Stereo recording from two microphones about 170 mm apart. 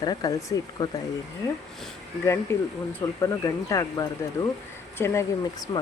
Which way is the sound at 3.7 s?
20° left (ahead or behind).